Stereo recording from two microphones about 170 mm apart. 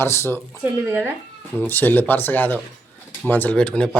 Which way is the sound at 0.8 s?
10° right (ahead or behind).